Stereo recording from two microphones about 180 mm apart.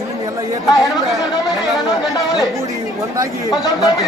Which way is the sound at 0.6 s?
20° left (ahead or behind).